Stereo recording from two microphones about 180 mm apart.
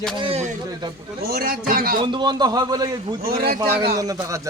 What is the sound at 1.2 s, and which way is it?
Speech, 55° right (ahead or behind).